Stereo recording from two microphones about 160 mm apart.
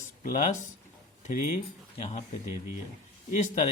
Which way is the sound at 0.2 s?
55° left (ahead or behind).